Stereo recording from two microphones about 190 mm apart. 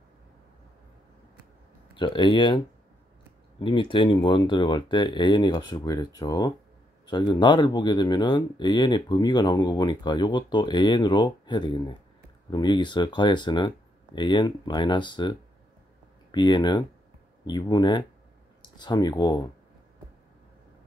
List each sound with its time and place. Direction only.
2.0 s speech: 25° left (ahead or behind)
3.6 s speech: 25° left (ahead or behind)